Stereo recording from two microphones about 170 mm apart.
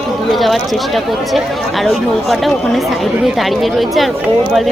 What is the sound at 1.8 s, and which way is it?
Speech, centre (ahead or behind).